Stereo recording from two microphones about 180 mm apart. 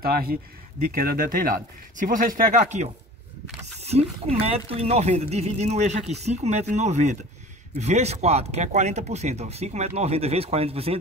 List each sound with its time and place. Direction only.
0.0 s speech: 55° right (ahead or behind); by 11.0 s 35° right (ahead or behind)